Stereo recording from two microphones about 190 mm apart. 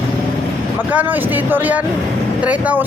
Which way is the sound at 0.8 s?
10° right (ahead or behind).